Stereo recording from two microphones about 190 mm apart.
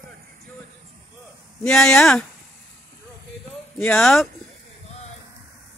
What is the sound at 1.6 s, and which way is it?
Speech, 5° left (ahead or behind).